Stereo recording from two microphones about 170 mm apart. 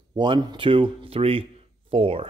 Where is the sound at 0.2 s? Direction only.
25° right (ahead or behind).